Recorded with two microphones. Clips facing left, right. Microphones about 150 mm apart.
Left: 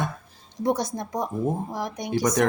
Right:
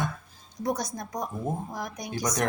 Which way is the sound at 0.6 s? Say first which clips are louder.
Left 5 dB; 30° left (ahead or behind).